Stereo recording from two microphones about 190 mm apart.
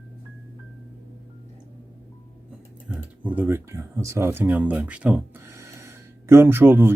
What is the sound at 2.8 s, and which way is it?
Speech, 5° right (ahead or behind).